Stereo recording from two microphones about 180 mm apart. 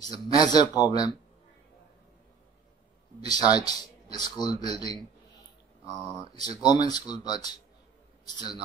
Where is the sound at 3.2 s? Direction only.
20° left (ahead or behind).